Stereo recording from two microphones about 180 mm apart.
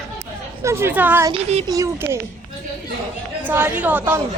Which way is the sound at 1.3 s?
35° right (ahead or behind).